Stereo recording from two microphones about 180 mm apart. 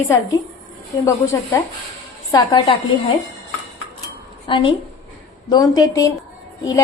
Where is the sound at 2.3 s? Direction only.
30° left (ahead or behind).